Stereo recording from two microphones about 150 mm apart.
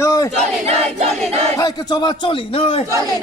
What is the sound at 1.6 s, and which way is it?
A man's voice, 25° left (ahead or behind).